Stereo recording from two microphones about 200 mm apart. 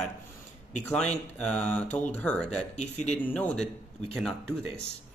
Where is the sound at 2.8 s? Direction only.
35° left (ahead or behind).